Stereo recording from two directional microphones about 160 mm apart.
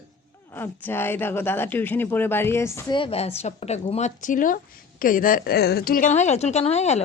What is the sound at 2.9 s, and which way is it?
A woman's voice, 35° left (ahead or behind).